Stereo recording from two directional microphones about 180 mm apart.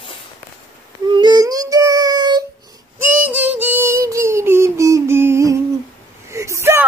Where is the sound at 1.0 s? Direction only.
25° right (ahead or behind).